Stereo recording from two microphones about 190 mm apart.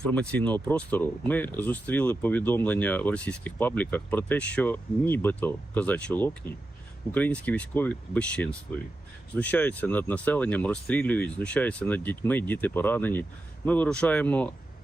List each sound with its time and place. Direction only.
0.1 s speech: 5° left (ahead or behind)